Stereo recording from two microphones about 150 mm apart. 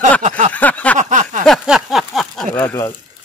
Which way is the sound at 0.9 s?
55° right (ahead or behind).